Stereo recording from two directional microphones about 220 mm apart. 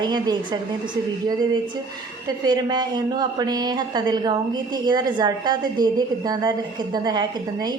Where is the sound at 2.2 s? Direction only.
20° right (ahead or behind).